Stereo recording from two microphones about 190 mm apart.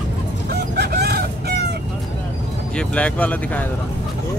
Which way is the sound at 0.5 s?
60° right (ahead or behind).